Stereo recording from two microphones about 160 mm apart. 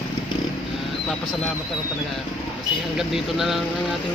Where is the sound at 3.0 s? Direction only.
Centre (ahead or behind).